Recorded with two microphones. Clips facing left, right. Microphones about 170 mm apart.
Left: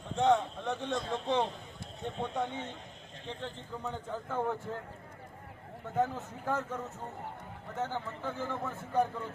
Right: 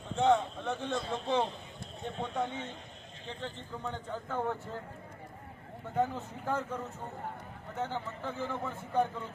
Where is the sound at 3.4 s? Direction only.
5° left (ahead or behind).